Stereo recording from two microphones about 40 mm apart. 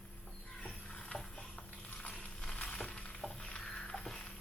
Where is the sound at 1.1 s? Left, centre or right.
Centre.